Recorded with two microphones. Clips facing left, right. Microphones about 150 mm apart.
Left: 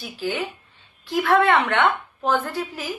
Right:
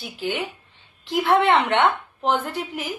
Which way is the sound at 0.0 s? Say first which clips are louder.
Even; 20° right (ahead or behind).